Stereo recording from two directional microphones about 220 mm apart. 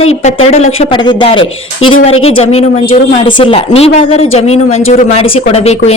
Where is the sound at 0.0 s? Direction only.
25° left (ahead or behind).